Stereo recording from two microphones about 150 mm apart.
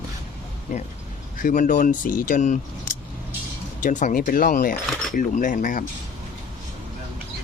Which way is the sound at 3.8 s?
55° left (ahead or behind).